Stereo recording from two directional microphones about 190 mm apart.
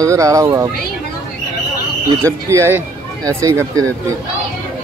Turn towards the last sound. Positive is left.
turn(degrees=-15)  # may be behind; listen again after turning